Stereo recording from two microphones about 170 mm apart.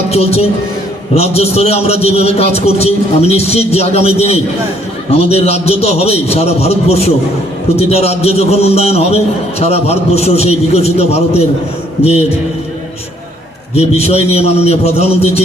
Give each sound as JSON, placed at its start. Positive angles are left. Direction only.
{"t": 0.1, "sound": "a man's voice", "side_deg": 35}
{"t": 13.7, "sound": "a man's voice", "side_deg": 40}